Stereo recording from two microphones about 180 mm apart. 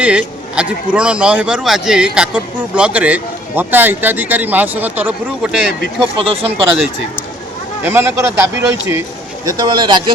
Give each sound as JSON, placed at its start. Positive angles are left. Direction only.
{"t": 0.0, "sound": "speech", "side_deg": -5}
{"t": 6.1, "sound": "speech", "side_deg": -30}
{"t": 7.9, "sound": "speech", "side_deg": -15}